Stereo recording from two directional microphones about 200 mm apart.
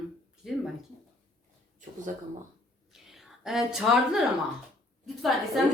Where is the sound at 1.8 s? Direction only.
40° right (ahead or behind).